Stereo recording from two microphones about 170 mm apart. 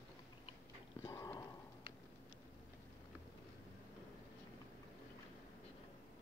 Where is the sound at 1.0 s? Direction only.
15° left (ahead or behind).